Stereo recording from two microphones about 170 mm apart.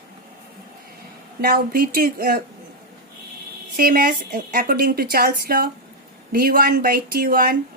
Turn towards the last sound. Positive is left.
turn(degrees=-60)  # may be behind; listen again after turning